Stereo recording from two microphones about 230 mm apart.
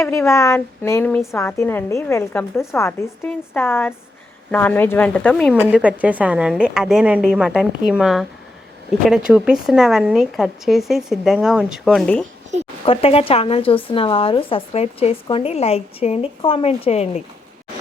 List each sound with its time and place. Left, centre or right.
0.0 s a woman's voice: centre
5.5 s speech: centre
12.8 s speech: left